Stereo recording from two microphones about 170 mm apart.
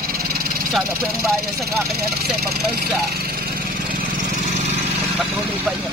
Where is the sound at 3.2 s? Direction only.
65° right (ahead or behind).